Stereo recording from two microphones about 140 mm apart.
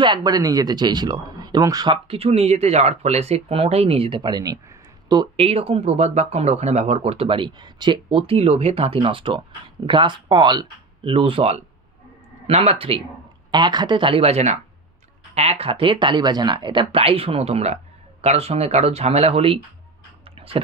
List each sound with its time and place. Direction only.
0.0 s speech: 30° right (ahead or behind)
2.0 s speech: 45° right (ahead or behind)
5.4 s speech: 45° right (ahead or behind)
13.5 s speech: 30° right (ahead or behind)
20.2 s tick-tock: 40° right (ahead or behind)